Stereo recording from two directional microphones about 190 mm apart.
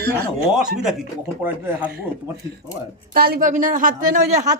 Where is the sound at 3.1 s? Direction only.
50° right (ahead or behind).